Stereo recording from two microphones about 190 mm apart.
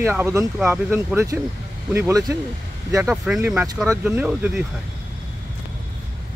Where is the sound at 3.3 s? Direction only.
10° right (ahead or behind).